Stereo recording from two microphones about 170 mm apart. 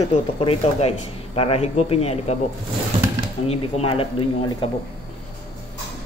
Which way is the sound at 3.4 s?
35° left (ahead or behind).